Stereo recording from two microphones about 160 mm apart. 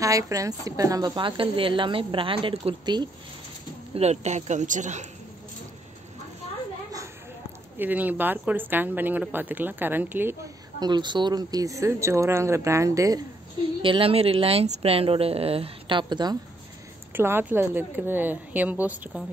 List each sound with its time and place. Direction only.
0.0 s a woman's voice: 20° right (ahead or behind)
3.9 s speech: 40° right (ahead or behind)
7.8 s speech: 10° right (ahead or behind)
10.8 s a woman's voice: 30° right (ahead or behind)
13.8 s a woman's voice: 35° right (ahead or behind)
17.1 s speech: 15° right (ahead or behind)